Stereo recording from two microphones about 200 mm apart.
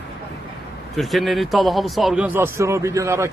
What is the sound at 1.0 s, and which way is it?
A man's voice, centre (ahead or behind).